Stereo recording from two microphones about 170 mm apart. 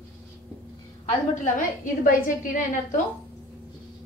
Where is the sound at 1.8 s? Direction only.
50° left (ahead or behind).